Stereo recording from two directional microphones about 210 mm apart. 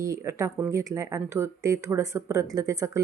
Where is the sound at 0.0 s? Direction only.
15° right (ahead or behind).